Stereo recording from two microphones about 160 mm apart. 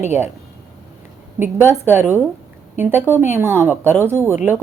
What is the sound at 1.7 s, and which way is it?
A woman's voice, 15° right (ahead or behind).